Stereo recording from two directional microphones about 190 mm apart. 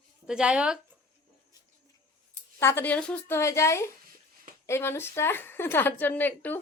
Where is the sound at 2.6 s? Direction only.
10° left (ahead or behind).